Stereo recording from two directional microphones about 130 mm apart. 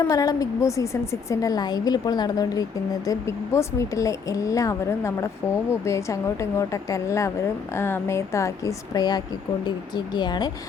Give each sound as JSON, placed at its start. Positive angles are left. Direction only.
{"t": 0.0, "sound": "a woman's voice", "side_deg": 25}